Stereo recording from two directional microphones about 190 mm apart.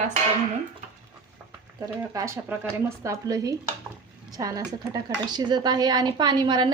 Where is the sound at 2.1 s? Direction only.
15° right (ahead or behind).